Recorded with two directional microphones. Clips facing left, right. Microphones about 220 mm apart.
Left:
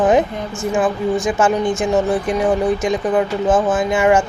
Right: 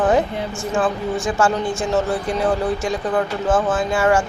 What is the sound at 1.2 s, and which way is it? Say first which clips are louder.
Speech: left 1 dB; 20° left (ahead or behind).